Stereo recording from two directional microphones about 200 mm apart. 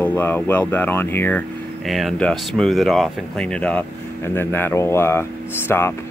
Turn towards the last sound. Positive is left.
turn(degrees=10)  # may be behind; listen again after turning